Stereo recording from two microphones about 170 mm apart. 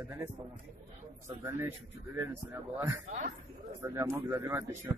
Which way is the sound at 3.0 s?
50° right (ahead or behind).